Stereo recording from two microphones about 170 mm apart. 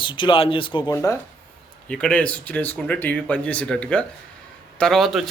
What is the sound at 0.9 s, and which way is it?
Speech, 15° left (ahead or behind).